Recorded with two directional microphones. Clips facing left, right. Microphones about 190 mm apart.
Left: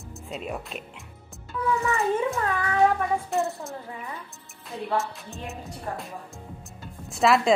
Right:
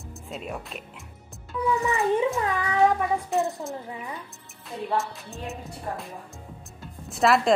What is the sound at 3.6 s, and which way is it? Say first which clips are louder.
Speech: right 3 dB; 15° right (ahead or behind).